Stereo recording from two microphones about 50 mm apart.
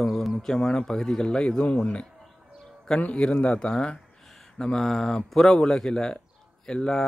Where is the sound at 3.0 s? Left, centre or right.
Left.